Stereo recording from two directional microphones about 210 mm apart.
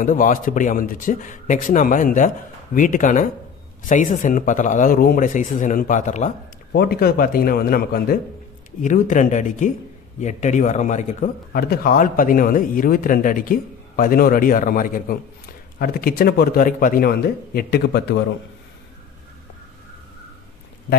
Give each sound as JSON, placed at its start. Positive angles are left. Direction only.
{"t": 0.0, "sound": "a man's voice", "side_deg": 40}
{"t": 6.7, "sound": "a man's voice", "side_deg": 50}